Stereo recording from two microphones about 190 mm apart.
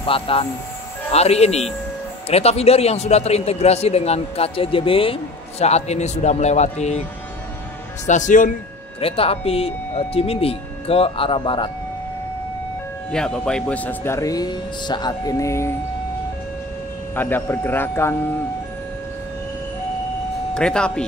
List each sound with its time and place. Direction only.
0.0 s a man's voice: 30° left (ahead or behind)
8.1 s a man's voice: 40° left (ahead or behind)
9.0 s a man's voice: 30° left (ahead or behind)
13.1 s speech: 5° left (ahead or behind)
17.1 s speech: 10° left (ahead or behind)
20.5 s speech: 5° left (ahead or behind)